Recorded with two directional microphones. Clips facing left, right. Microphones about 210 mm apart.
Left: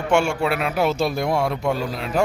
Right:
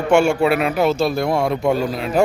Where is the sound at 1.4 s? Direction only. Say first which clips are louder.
Right 4 dB; centre (ahead or behind).